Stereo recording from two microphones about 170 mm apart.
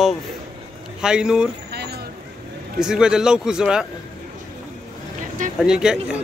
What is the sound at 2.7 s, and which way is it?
A man's voice, 5° right (ahead or behind).